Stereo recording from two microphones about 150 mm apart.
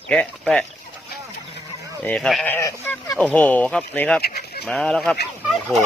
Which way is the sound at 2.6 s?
20° left (ahead or behind).